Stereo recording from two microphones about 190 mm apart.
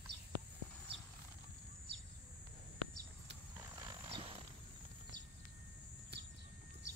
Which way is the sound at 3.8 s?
30° right (ahead or behind).